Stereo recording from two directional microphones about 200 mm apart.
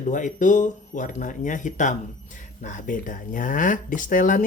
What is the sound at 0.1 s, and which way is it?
Speech, 40° left (ahead or behind).